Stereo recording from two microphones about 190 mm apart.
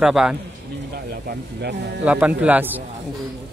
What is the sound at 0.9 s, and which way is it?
Speech, 55° right (ahead or behind).